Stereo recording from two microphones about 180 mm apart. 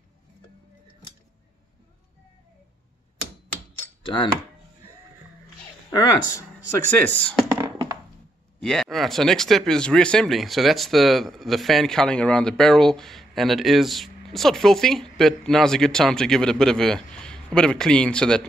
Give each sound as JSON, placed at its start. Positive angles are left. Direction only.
{"t": 4.0, "sound": "dishes", "side_deg": 25}
{"t": 5.9, "sound": "speech", "side_deg": 20}
{"t": 7.1, "sound": "speech", "side_deg": 5}
{"t": 7.4, "sound": "a sound", "side_deg": -15}
{"t": 8.5, "sound": "speech", "side_deg": 5}